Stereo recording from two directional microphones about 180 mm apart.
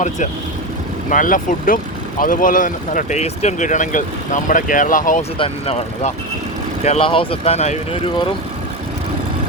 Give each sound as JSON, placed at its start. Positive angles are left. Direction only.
{"t": 1.1, "sound": "speech", "side_deg": 45}
{"t": 5.4, "sound": "speech", "side_deg": 35}